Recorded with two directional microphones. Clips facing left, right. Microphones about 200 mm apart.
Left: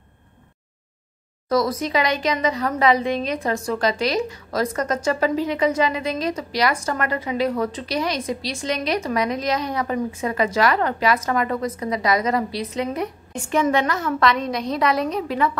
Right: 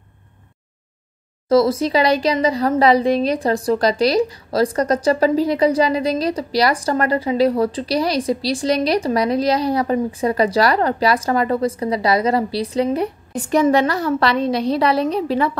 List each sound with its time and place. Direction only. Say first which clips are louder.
1.5 s speech: right 6 dB; 30° right (ahead or behind)